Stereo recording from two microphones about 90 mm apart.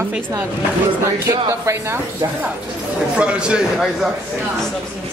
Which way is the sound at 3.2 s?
10° right (ahead or behind).